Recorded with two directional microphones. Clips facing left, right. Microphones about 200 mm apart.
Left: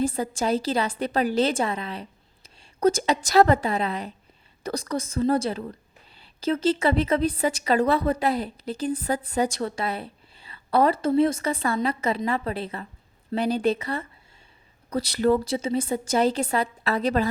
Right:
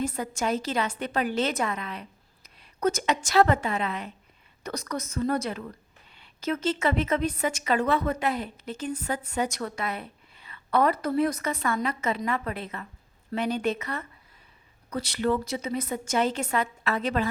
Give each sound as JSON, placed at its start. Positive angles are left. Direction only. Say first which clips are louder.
{"t": 0.0, "sound": "a woman's voice", "louder": "left 4 dB", "side_deg": 30}